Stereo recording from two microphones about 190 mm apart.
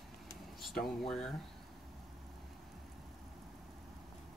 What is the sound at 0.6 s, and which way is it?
Speech, centre (ahead or behind).